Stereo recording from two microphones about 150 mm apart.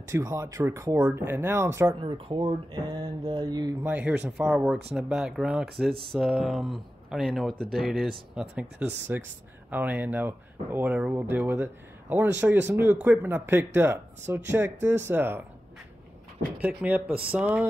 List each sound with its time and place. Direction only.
0.1 s speech: 20° right (ahead or behind)
2.0 s speech: 35° right (ahead or behind)
3.8 s speech: 10° right (ahead or behind)
16.8 s speech: 10° right (ahead or behind)